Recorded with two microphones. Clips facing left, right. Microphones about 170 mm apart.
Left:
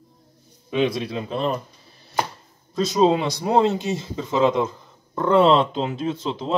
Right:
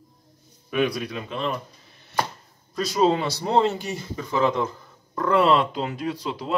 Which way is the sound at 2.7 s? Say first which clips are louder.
Left 3 dB; 20° left (ahead or behind).